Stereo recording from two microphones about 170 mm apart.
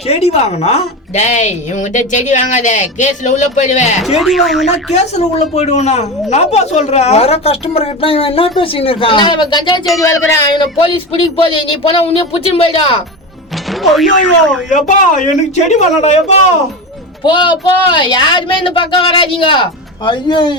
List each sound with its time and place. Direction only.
0.1 s speech: 40° left (ahead or behind)
4.0 s speech: centre (ahead or behind)
4.6 s a woman's voice: 40° left (ahead or behind); by 10.4 s 20° left (ahead or behind)
10.8 s a woman's voice: 30° left (ahead or behind)
13.9 s speech: centre (ahead or behind)
14.7 s speech: 45° left (ahead or behind)
17.2 s speech: 25° left (ahead or behind)